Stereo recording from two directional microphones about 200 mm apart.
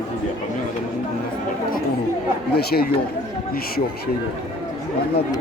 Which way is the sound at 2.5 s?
50° left (ahead or behind).